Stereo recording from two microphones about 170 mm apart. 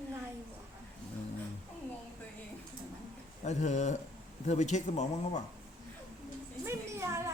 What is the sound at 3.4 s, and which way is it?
Speech, 45° left (ahead or behind).